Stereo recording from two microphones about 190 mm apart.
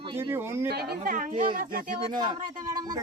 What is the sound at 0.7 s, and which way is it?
A woman's voice, 55° right (ahead or behind).